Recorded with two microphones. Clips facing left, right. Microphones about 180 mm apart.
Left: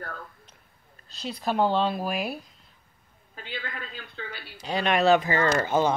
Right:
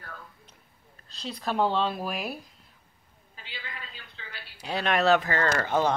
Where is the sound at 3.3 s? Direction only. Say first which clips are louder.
Left 7 dB; 55° left (ahead or behind).